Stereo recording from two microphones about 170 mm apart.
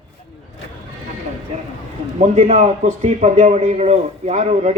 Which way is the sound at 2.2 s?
45° right (ahead or behind).